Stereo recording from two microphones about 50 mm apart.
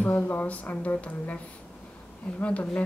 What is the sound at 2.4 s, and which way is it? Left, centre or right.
Speech, left.